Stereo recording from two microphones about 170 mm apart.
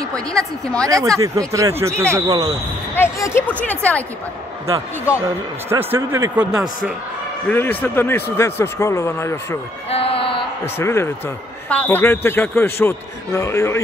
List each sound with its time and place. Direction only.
0.1 s a woman's voice: 5° left (ahead or behind)
0.8 s speech: 20° right (ahead or behind)
3.0 s a man's voice: 15° left (ahead or behind)
5.7 s speech: 15° right (ahead or behind)
7.4 s a man's voice: 10° left (ahead or behind)
9.8 s a sound: 35° left (ahead or behind)
10.6 s a man's voice: 15° left (ahead or behind)